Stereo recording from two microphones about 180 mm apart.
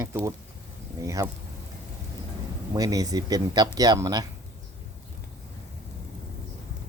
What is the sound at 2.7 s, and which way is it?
Speech, 20° right (ahead or behind).